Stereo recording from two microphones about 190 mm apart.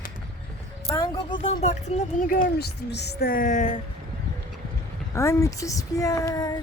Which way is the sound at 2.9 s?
55° left (ahead or behind).